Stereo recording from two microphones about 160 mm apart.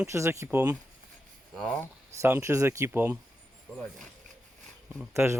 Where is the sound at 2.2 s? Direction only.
15° right (ahead or behind).